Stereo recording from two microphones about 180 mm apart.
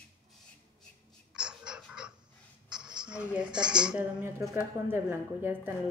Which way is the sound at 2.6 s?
5° right (ahead or behind).